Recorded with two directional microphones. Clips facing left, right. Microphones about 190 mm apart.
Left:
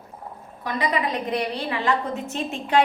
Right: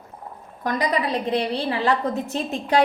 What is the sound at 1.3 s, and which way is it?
A woman's voice, 30° right (ahead or behind).